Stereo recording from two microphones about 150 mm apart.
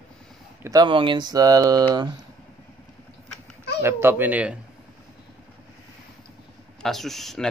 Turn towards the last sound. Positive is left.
turn(degrees=0)  # may be behind; listen again after turning